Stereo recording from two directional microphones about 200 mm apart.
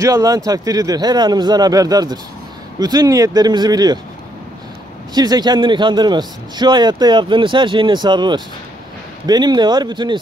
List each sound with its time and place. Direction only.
0.0 s a man's voice: 15° right (ahead or behind)
5.1 s a man's voice: 20° right (ahead or behind)